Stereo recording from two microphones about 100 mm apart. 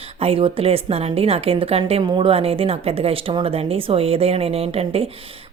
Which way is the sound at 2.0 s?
55° right (ahead or behind).